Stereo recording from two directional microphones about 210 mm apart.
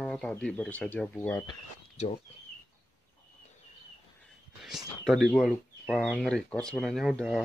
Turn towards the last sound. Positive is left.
turn(degrees=0)  # may be behind; listen again after turning